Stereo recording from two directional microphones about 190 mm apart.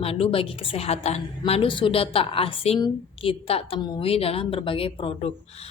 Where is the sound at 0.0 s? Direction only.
30° left (ahead or behind).